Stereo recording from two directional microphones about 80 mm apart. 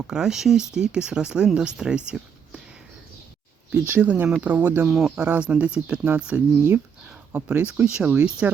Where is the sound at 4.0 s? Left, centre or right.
Centre.